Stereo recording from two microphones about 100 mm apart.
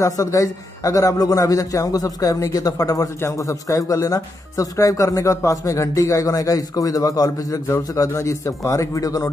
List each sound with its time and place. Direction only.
0.0 s a man's voice: 35° left (ahead or behind)